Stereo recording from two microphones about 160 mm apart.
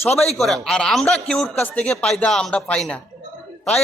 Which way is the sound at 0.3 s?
Centre (ahead or behind).